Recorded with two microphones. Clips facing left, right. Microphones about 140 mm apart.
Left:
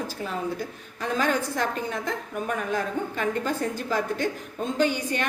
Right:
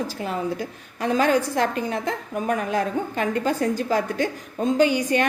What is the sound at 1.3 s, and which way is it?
Speech, 45° right (ahead or behind).